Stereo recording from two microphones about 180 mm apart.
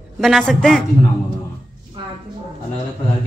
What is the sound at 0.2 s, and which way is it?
Speech, centre (ahead or behind).